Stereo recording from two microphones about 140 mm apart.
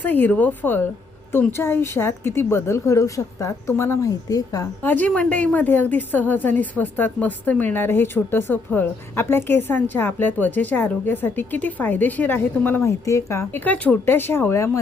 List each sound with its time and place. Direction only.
0.0 s a woman's voice: 10° left (ahead or behind)
4.8 s a woman's voice: 10° left (ahead or behind)